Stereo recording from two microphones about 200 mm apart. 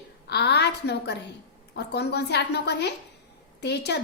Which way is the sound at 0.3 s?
55° left (ahead or behind).